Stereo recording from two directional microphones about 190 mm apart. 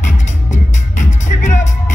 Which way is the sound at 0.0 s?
40° left (ahead or behind).